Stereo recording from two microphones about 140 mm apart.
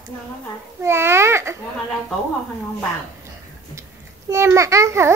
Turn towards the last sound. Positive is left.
turn(degrees=-20)  # may be behind; listen again after turning